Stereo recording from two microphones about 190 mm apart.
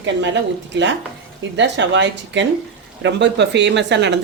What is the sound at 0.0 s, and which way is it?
Speech, 70° right (ahead or behind).